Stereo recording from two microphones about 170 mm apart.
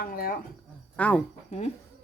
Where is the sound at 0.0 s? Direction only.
55° left (ahead or behind).